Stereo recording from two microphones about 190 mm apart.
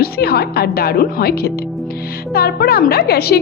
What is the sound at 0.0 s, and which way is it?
A woman's voice, 55° left (ahead or behind).